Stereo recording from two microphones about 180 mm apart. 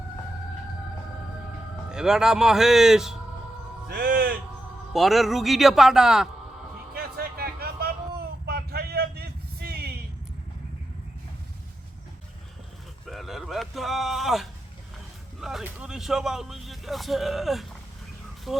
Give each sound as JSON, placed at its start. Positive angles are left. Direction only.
{"t": 1.9, "sound": "speech", "side_deg": -5}
{"t": 3.8, "sound": "music", "side_deg": -55}
{"t": 4.9, "sound": "speech", "side_deg": 0}
{"t": 6.9, "sound": "a sound", "side_deg": -60}
{"t": 13.1, "sound": "a sound", "side_deg": 0}
{"t": 15.4, "sound": "speech", "side_deg": 0}